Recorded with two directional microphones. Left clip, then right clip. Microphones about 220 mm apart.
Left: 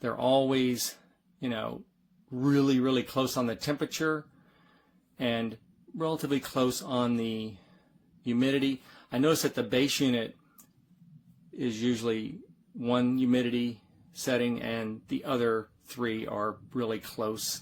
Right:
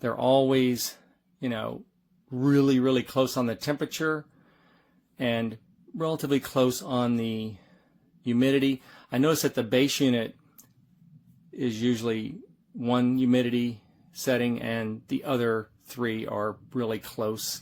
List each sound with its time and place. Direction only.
0.0 s a man's voice: 20° right (ahead or behind)
11.5 s a man's voice: 20° right (ahead or behind)